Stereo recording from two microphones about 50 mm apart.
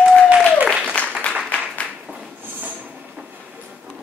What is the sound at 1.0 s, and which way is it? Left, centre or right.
Applause, left.